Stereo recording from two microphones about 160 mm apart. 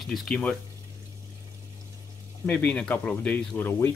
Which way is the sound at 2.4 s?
10° left (ahead or behind).